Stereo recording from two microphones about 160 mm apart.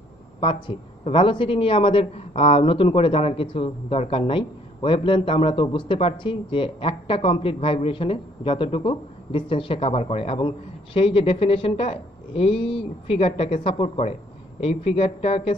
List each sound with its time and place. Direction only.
0.4 s speech: 30° left (ahead or behind)